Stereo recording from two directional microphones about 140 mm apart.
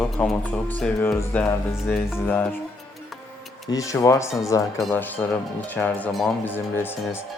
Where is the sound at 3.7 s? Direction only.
25° left (ahead or behind).